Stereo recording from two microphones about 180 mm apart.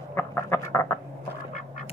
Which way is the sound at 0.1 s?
15° left (ahead or behind).